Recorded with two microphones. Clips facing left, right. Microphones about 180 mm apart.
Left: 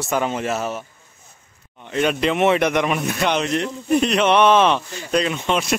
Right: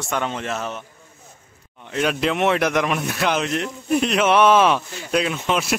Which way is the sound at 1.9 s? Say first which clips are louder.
Left 2 dB; centre (ahead or behind).